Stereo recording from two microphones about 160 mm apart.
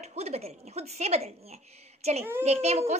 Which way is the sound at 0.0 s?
40° right (ahead or behind).